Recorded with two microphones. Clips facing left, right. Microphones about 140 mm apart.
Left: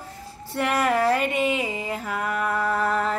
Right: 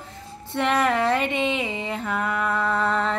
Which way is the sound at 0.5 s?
5° left (ahead or behind).